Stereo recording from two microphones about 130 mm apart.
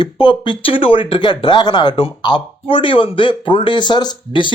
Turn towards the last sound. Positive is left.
turn(degrees=35)  # may be behind; listen again after turning